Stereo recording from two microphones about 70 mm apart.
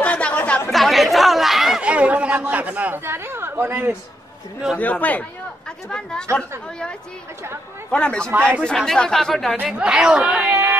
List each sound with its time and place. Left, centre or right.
0.0 s chatter: centre
0.7 s chatter: centre
1.8 s chatter: centre
3.0 s a woman's voice: right
4.7 s speech: left
5.9 s a woman's voice: centre
7.9 s a woman's voice: centre
8.3 s speech: right
8.7 s speech: centre
9.8 s speech: centre